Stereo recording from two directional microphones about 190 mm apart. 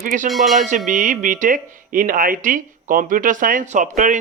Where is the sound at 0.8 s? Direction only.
40° right (ahead or behind).